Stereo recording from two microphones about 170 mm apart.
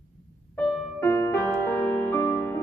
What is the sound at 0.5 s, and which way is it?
Music, 10° left (ahead or behind).